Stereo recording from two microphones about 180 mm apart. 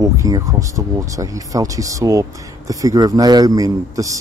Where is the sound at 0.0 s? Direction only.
20° right (ahead or behind).